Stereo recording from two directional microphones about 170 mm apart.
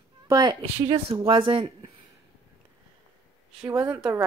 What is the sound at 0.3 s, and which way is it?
Speech, 25° right (ahead or behind).